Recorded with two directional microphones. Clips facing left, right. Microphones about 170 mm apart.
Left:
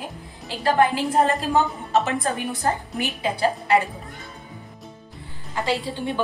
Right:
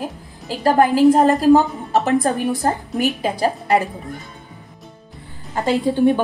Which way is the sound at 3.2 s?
45° right (ahead or behind).